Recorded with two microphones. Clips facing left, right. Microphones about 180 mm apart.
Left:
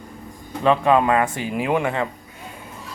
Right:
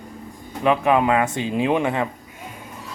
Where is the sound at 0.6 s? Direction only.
15° right (ahead or behind).